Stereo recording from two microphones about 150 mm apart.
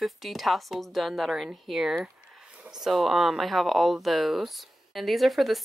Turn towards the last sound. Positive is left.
turn(degrees=0)  # may be behind; listen again after turning